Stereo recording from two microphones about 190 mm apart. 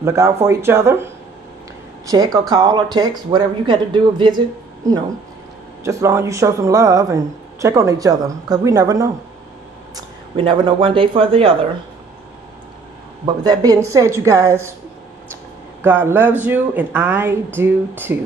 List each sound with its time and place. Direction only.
0.0 s speech: 15° right (ahead or behind)
5.9 s speech: 15° right (ahead or behind)
13.2 s speech: 20° right (ahead or behind)
15.8 s speech: 10° right (ahead or behind)